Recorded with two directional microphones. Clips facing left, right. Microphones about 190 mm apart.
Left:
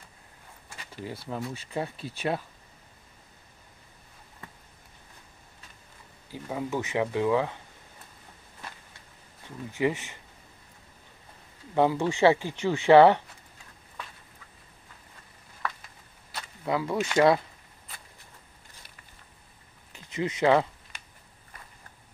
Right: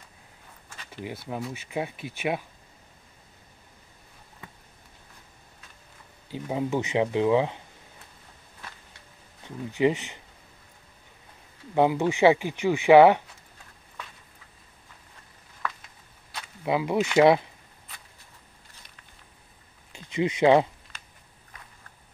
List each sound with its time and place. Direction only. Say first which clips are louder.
1.0 s speech: right 1 dB; 20° right (ahead or behind)
6.5 s speech: right 3 dB; 20° right (ahead or behind)
9.8 s speech: right 4 dB; 20° right (ahead or behind)
11.7 s speech: right 2 dB; 15° right (ahead or behind)
16.6 s speech: right 3 dB; 15° right (ahead or behind)
19.9 s speech: right 4 dB; 15° right (ahead or behind)
21.5 s walk: even; 5° left (ahead or behind)